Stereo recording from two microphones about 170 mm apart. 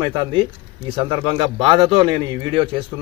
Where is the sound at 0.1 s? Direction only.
30° right (ahead or behind).